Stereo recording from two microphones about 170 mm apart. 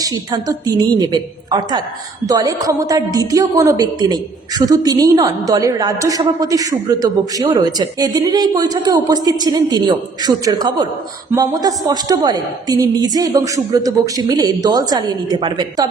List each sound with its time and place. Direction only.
0.0 s a woman's voice: 20° right (ahead or behind)